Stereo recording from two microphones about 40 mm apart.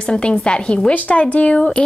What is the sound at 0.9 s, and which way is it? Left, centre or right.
Speech, left.